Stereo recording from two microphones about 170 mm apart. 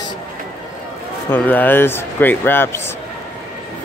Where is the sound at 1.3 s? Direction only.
10° left (ahead or behind).